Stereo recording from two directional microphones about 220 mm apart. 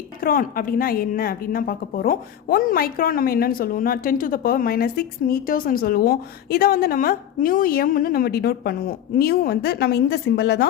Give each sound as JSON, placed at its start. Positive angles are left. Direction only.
{"t": 0.2, "sound": "a woman's voice", "side_deg": 40}